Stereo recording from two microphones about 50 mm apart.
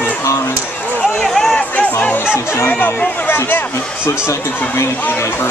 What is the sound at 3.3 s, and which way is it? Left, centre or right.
Speech, left.